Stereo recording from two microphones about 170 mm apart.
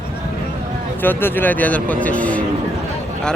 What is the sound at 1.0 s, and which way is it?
Speech, 10° left (ahead or behind).